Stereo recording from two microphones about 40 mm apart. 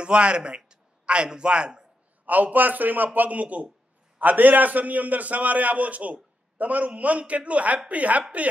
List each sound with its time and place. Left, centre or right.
0.0 s speech: right
2.2 s a man's voice: right
4.2 s a man's voice: right